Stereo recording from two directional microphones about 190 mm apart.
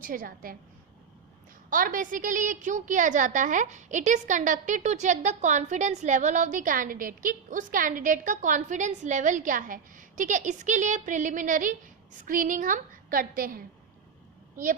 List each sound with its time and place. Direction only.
0.0 s a woman's voice: 45° right (ahead or behind)
1.7 s a woman's voice: 45° right (ahead or behind)